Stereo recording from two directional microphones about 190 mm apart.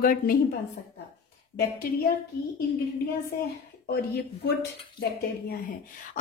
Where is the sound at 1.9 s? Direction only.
50° left (ahead or behind).